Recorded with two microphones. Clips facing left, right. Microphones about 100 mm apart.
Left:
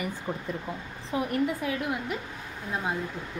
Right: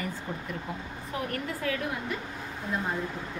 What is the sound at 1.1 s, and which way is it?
Speech, 15° left (ahead or behind).